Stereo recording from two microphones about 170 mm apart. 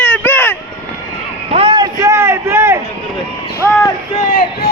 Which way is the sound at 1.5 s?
30° right (ahead or behind).